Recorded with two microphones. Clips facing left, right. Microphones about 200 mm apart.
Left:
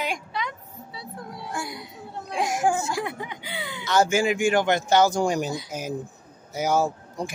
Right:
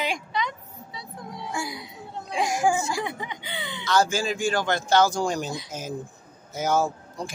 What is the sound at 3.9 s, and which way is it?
A man's voice, 20° left (ahead or behind).